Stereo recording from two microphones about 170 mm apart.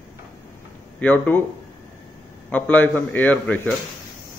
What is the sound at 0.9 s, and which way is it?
Speech, 10° left (ahead or behind).